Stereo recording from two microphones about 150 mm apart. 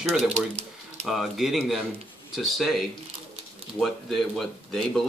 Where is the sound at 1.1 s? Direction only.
Centre (ahead or behind).